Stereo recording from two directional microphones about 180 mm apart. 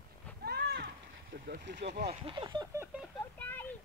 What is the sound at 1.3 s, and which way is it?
Speech, 60° right (ahead or behind).